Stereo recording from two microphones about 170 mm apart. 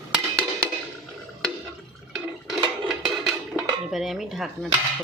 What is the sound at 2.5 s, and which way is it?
Dishes, 30° right (ahead or behind).